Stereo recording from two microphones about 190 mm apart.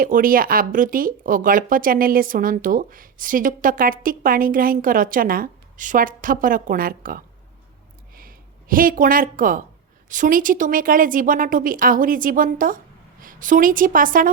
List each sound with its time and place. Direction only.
0.0 s speech: 45° right (ahead or behind)